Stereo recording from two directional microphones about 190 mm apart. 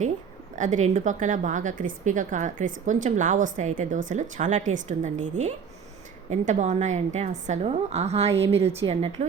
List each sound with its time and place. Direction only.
0.5 s a woman's voice: 40° right (ahead or behind)